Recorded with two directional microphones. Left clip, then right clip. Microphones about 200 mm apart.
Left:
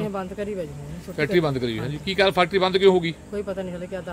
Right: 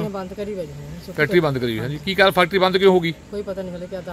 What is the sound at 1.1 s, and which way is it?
Speech, 40° right (ahead or behind).